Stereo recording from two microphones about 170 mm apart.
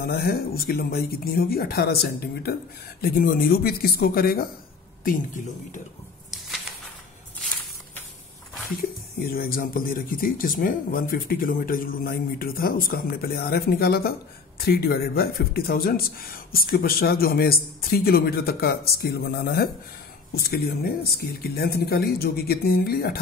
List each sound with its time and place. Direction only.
0.0 s speech: 60° left (ahead or behind)
5.0 s speech: 50° left (ahead or behind)
8.8 s speech: 60° left (ahead or behind)